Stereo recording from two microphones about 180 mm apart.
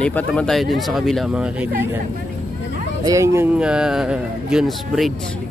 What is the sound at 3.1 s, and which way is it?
Speech, 15° right (ahead or behind).